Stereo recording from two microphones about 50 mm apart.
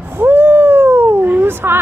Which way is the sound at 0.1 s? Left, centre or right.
Right.